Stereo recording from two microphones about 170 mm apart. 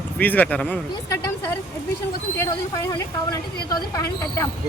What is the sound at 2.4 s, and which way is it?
A woman's voice, 20° left (ahead or behind).